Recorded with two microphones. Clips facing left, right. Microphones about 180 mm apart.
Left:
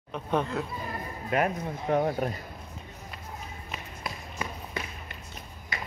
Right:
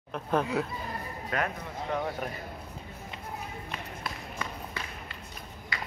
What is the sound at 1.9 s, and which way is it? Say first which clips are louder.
Speech: left 7 dB; 35° left (ahead or behind).